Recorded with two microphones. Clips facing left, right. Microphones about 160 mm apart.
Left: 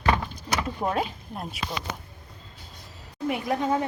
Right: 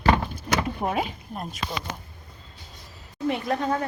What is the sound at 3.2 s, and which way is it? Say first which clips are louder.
Speech: right 1 dB; 10° left (ahead or behind).